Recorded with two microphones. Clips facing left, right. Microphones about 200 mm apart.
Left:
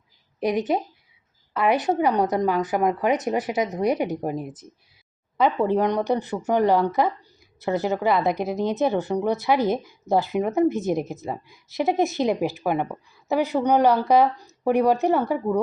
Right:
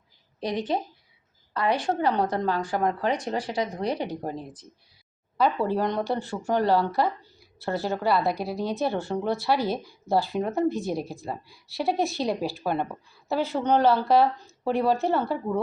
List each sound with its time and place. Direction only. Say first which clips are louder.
0.3 s a woman's voice: left 5 dB; 20° left (ahead or behind)